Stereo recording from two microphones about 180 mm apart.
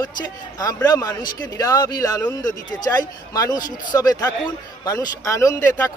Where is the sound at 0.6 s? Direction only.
20° left (ahead or behind).